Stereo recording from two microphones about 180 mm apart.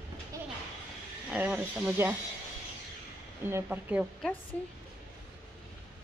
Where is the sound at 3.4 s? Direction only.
10° right (ahead or behind).